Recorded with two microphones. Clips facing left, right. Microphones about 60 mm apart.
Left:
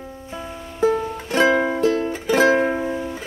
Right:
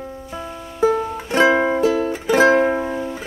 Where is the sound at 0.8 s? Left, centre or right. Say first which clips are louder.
Right 2 dB; centre.